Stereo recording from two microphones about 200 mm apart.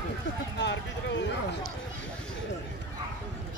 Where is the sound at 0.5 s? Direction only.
65° left (ahead or behind).